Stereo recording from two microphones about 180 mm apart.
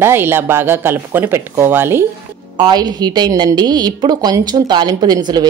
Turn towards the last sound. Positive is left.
turn(degrees=-25)  # may be behind; listen again after turning